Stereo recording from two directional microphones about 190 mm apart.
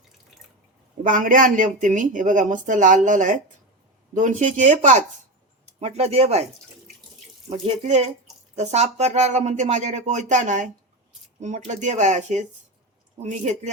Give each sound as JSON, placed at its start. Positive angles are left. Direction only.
{"t": 1.0, "sound": "speech", "side_deg": -45}
{"t": 7.5, "sound": "speech", "side_deg": -35}